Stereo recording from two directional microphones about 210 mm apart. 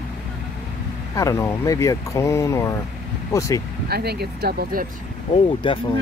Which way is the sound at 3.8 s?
50° right (ahead or behind).